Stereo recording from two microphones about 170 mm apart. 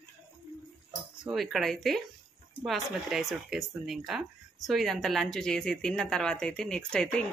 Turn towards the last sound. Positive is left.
turn(degrees=5)  # may be behind; listen again after turning